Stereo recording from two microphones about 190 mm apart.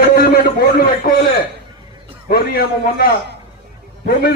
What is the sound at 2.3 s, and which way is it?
A man's voice, 55° left (ahead or behind).